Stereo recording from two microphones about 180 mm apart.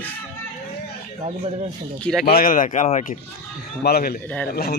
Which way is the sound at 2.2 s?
50° left (ahead or behind).